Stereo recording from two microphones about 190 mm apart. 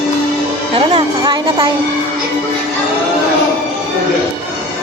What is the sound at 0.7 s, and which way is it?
Music, 25° right (ahead or behind).